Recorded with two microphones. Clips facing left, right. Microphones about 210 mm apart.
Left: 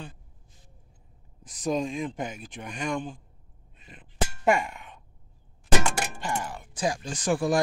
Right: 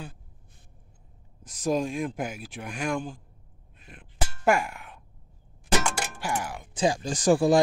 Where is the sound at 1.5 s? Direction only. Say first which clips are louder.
Right 1 dB; centre (ahead or behind).